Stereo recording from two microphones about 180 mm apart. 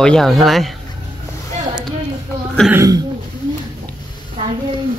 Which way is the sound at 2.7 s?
20° right (ahead or behind).